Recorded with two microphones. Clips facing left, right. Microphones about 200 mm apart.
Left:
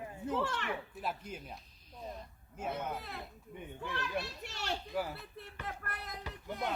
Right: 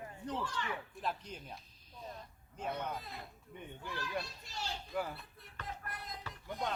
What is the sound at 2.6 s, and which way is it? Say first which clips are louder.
Speech: left 1 dB; 5° left (ahead or behind).